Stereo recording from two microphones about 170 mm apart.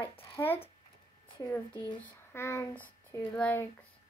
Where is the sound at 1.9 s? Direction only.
10° left (ahead or behind).